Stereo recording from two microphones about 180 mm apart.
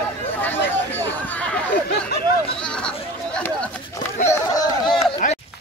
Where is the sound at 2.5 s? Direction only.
5° left (ahead or behind).